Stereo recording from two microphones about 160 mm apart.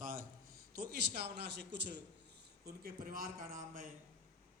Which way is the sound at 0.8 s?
80° right.